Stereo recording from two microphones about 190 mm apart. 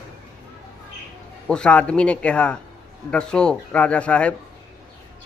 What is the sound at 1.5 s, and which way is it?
Speech, 5° left (ahead or behind).